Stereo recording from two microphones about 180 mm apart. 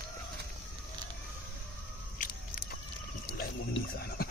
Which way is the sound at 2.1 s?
50° left (ahead or behind).